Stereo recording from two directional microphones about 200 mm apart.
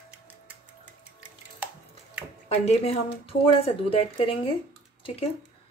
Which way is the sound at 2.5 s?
30° left (ahead or behind).